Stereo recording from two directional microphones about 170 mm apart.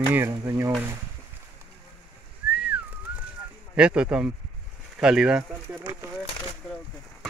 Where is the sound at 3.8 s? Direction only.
5° right (ahead or behind).